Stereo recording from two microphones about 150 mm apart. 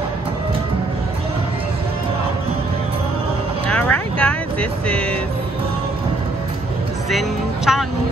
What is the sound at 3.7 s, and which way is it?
Music, 10° left (ahead or behind).